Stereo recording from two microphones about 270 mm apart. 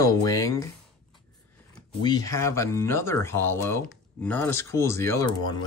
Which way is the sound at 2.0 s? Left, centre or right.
Centre.